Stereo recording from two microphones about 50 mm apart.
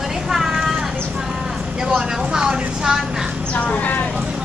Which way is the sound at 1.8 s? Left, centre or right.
Centre.